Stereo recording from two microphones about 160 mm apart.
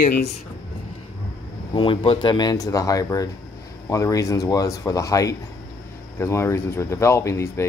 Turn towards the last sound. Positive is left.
turn(degrees=15)  # may be behind; listen again after turning